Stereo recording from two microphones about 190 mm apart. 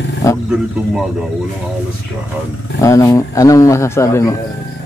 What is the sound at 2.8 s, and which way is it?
Speech, 15° left (ahead or behind).